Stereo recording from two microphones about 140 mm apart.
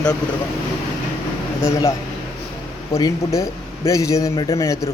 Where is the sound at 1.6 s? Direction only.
20° left (ahead or behind).